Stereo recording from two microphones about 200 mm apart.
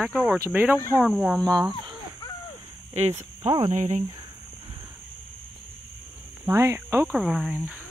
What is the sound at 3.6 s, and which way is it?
Speech, 35° right (ahead or behind).